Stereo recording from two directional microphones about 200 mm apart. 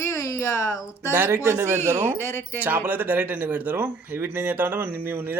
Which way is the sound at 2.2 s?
10° left (ahead or behind).